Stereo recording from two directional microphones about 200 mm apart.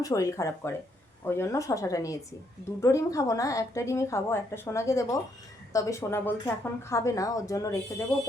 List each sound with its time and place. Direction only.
0.0 s a woman's voice: 15° left (ahead or behind)